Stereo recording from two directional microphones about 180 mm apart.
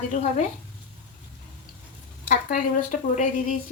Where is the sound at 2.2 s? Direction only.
50° left (ahead or behind).